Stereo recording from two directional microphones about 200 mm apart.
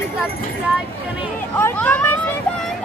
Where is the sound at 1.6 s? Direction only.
10° left (ahead or behind).